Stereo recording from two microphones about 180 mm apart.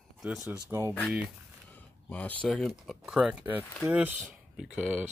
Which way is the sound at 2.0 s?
10° left (ahead or behind).